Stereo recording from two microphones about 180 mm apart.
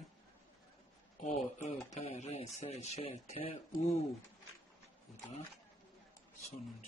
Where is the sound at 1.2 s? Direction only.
35° left (ahead or behind).